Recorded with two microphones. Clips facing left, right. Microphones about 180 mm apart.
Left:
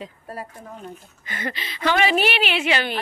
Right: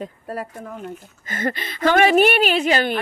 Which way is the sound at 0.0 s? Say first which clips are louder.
Right 5 dB; 70° right (ahead or behind).